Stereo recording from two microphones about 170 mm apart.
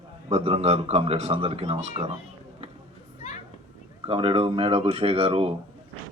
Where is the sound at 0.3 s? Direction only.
35° right (ahead or behind).